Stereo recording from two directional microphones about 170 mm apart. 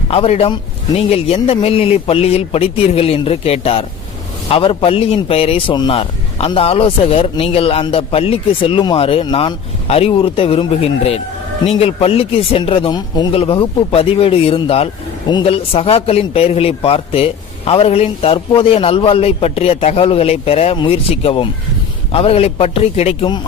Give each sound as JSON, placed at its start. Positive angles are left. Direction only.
{"t": 0.1, "sound": "a man's voice", "side_deg": 35}